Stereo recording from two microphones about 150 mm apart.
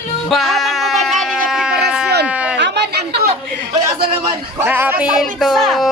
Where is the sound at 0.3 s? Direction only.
Centre (ahead or behind).